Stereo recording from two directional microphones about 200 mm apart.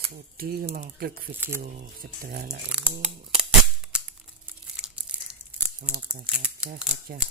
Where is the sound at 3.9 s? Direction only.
5° right (ahead or behind).